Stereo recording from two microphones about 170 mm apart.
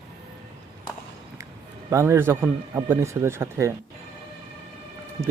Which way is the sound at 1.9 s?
15° right (ahead or behind).